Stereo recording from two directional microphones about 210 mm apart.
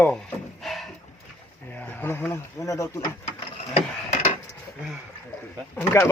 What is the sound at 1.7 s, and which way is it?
Speech, 10° left (ahead or behind).